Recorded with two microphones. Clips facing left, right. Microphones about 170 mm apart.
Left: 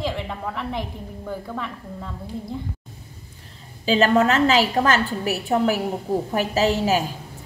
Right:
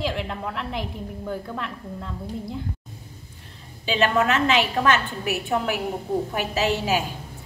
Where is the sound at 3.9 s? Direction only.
35° left (ahead or behind).